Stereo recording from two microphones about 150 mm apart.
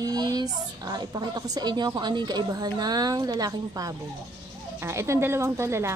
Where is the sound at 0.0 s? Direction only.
25° right (ahead or behind).